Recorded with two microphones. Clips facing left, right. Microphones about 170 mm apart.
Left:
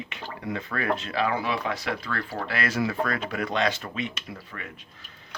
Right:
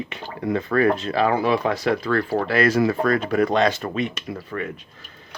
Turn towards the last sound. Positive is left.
turn(degrees=-45)  # may be behind; listen again after turning